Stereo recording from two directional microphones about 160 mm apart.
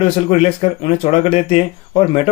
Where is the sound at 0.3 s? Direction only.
35° left (ahead or behind).